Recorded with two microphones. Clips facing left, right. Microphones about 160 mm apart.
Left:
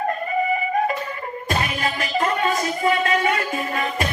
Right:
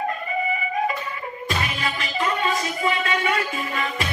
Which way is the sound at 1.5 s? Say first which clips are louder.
Left 3 dB; 45° left (ahead or behind).